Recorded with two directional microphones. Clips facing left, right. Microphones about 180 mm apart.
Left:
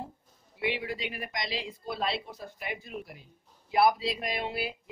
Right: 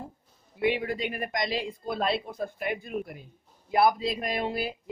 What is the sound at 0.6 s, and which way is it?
A woman's voice, 50° right (ahead or behind).